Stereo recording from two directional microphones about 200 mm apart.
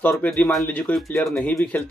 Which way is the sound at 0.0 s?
10° left (ahead or behind).